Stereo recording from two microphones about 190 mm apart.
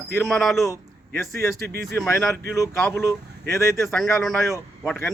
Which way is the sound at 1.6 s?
60° right (ahead or behind).